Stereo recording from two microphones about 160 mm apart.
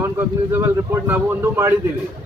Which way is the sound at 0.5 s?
15° right (ahead or behind).